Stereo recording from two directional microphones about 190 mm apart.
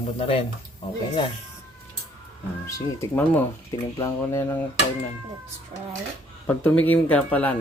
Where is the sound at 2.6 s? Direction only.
15° left (ahead or behind).